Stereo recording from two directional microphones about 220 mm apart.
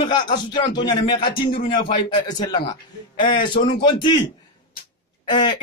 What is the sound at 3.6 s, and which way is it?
Speech, 50° left (ahead or behind).